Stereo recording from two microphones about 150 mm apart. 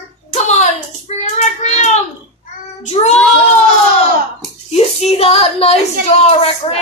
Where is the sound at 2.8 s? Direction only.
50° left (ahead or behind).